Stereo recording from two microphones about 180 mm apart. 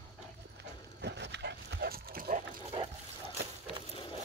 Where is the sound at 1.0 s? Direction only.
70° right (ahead or behind); by 2.4 s 55° right (ahead or behind).